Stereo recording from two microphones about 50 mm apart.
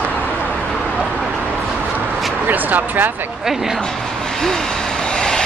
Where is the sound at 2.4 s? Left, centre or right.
Right.